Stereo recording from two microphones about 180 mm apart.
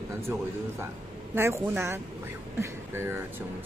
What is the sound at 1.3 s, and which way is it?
Speech, 15° right (ahead or behind).